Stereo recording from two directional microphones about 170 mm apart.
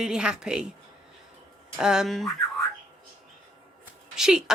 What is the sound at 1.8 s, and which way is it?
Whistling, 5° right (ahead or behind).